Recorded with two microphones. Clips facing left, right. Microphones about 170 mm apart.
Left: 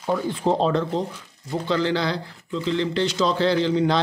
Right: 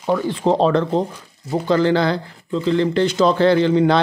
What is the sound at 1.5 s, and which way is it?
Speech, 50° right (ahead or behind).